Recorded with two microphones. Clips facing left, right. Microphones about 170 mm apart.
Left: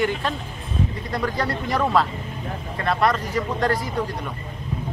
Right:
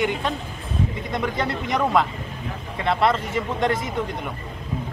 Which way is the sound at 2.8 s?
25° right (ahead or behind).